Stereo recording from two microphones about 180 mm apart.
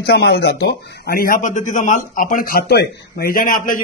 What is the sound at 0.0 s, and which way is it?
Speech, 65° left (ahead or behind).